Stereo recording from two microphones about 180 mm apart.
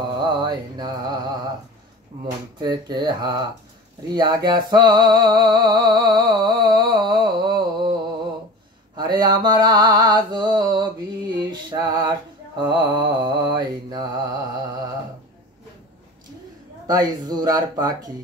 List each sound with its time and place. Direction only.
0.2 s mantra: 25° right (ahead or behind)
2.6 s mantra: 25° right (ahead or behind)
4.1 s music: 25° right (ahead or behind)
8.9 s mantra: 25° right (ahead or behind)
16.8 s mantra: 20° right (ahead or behind)